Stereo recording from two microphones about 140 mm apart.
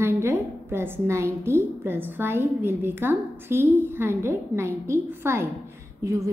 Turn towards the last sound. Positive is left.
turn(degrees=-20)  # may be behind; listen again after turning